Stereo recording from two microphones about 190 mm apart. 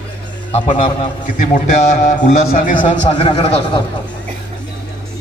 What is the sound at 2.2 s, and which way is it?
A man's voice, 35° left (ahead or behind).